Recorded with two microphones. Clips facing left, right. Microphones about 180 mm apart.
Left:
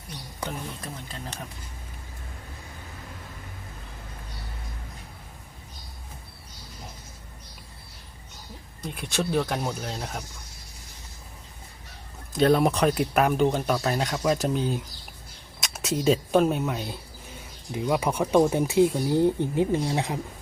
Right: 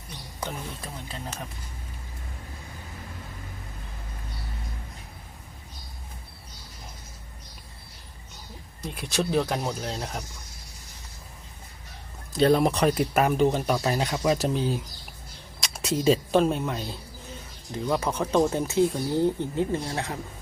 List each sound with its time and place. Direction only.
8.8 s speech: centre (ahead or behind)
12.4 s speech: centre (ahead or behind); by 20.1 s 15° left (ahead or behind)